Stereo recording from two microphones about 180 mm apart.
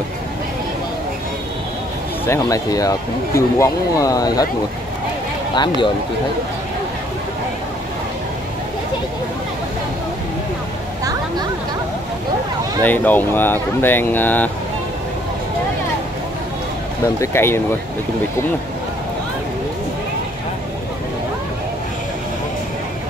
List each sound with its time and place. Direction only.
2.2 s speech: 15° left (ahead or behind)
12.8 s speech: 10° left (ahead or behind)
17.0 s speech: 15° left (ahead or behind)